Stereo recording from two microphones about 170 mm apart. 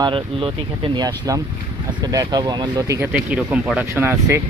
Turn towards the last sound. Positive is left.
turn(degrees=-10)  # may be behind; listen again after turning